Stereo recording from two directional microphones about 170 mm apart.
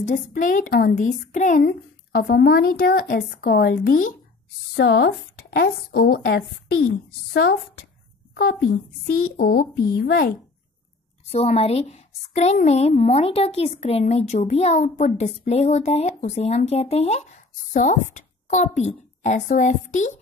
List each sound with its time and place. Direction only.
0.0 s speech: 50° left (ahead or behind)
1.7 s a woman's voice: 75° left (ahead or behind); by 4.1 s 55° left (ahead or behind)
4.7 s speech: 85° left
5.5 s a woman's voice: 65° left (ahead or behind)
6.9 s a child's voice: 75° left (ahead or behind)
9.0 s a woman's voice: 65° left (ahead or behind); by 10.3 s 80° left
11.2 s a woman's voice: 40° left (ahead or behind)